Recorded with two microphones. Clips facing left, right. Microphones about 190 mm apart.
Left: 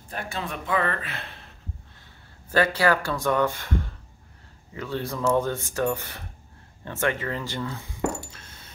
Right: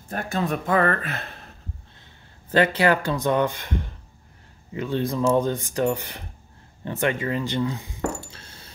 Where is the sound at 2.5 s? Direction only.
20° right (ahead or behind).